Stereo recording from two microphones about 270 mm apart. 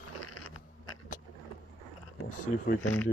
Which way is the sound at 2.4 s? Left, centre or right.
Left.